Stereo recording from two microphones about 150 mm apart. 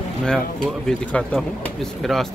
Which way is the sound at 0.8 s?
5° left (ahead or behind).